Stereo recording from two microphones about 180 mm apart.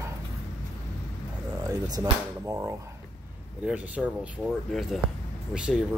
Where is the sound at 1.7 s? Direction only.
20° right (ahead or behind).